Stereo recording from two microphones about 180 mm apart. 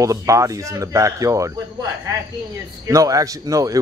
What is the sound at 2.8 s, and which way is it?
Speech, 20° right (ahead or behind).